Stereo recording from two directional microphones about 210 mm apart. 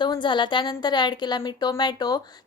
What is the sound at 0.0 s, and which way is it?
A woman's voice, 20° left (ahead or behind).